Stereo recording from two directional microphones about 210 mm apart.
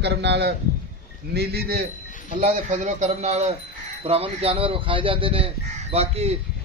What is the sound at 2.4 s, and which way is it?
A man's voice, 35° right (ahead or behind).